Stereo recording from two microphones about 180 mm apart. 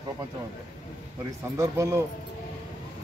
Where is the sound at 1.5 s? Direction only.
20° right (ahead or behind).